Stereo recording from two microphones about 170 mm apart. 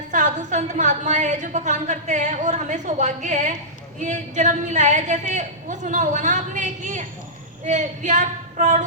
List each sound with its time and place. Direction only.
0.1 s a woman's voice: 45° right (ahead or behind)